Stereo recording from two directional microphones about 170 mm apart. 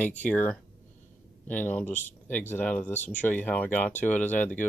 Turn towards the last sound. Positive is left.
turn(degrees=10)  # may be behind; listen again after turning